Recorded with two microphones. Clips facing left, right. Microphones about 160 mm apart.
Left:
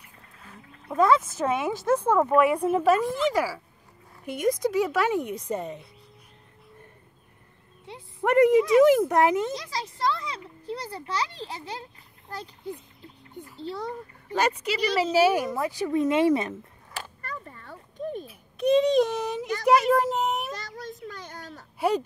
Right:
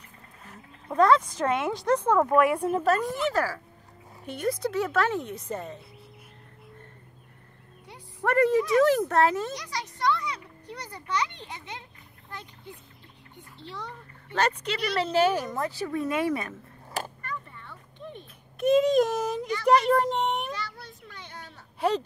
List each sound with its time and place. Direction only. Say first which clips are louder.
0.9 s a woman's voice: even; 5° left (ahead or behind)
7.8 s a child's voice: left 2 dB; 25° left (ahead or behind)
14.3 s a woman's voice: left 2 dB; 10° left (ahead or behind)
17.2 s a sound: even; 40° left (ahead or behind)
18.2 s a child's voice: right 2 dB; centre (ahead or behind)
20.5 s a sound: left 1 dB; 40° left (ahead or behind)
21.7 s speech: left 1 dB; 10° left (ahead or behind)